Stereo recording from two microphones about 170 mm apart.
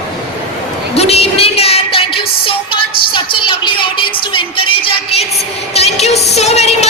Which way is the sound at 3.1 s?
30° left (ahead or behind).